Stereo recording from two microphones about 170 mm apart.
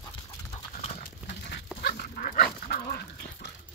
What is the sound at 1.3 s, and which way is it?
Dog, 80° left.